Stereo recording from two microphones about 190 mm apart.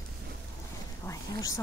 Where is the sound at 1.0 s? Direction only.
15° left (ahead or behind).